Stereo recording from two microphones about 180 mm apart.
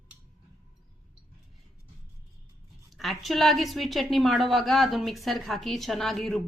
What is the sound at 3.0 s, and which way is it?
A woman's voice, centre (ahead or behind).